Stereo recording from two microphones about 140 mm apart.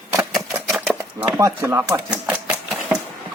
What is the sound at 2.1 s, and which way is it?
Typewriter, 10° right (ahead or behind).